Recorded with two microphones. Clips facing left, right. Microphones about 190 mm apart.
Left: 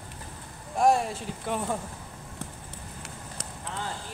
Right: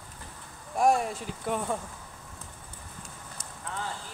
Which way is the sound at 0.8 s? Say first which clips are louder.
Left 1 dB; centre (ahead or behind).